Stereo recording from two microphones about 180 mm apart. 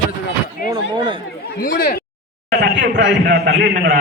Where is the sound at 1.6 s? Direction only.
50° left (ahead or behind).